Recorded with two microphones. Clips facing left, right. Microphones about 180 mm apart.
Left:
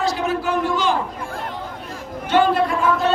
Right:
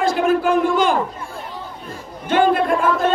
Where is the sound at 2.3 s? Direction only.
50° right (ahead or behind).